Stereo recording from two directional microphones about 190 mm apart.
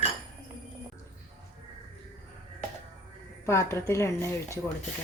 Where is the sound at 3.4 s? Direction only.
15° left (ahead or behind).